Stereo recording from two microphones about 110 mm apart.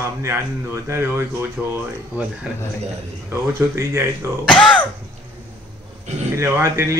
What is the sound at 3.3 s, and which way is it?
Speech, 25° right (ahead or behind).